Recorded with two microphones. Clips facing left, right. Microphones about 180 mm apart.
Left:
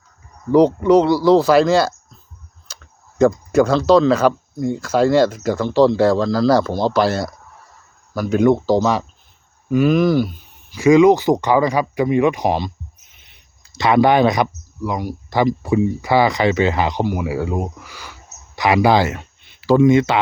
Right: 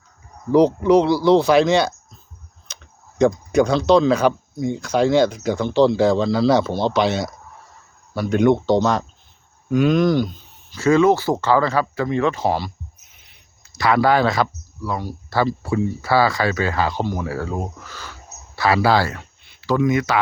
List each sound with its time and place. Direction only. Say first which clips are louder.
0.5 s speech: left 2 dB; centre (ahead or behind)
3.2 s speech: left 2 dB; centre (ahead or behind); by 12.7 s 20° left (ahead or behind)
13.7 s speech: left 3 dB; 20° left (ahead or behind)